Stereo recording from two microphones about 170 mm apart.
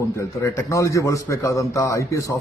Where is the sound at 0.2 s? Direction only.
15° left (ahead or behind).